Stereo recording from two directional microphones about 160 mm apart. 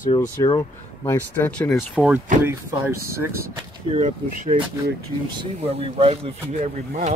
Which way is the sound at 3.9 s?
45° right (ahead or behind).